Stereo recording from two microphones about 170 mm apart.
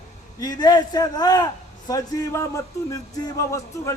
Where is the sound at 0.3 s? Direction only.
25° left (ahead or behind).